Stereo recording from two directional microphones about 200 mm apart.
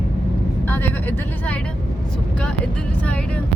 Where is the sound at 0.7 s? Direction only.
10° left (ahead or behind).